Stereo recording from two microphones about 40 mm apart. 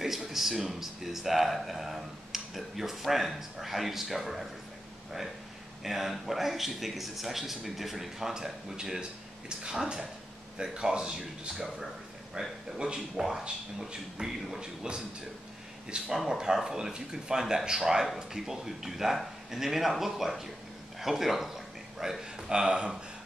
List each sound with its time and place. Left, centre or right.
0.0 s a man's voice: centre
5.9 s a man's voice: centre; by 11.5 s right
11.5 s a man's voice: centre
12.4 s a man's voice: right; by 21.5 s centre
21.9 s a sound: centre
22.5 s a man's voice: right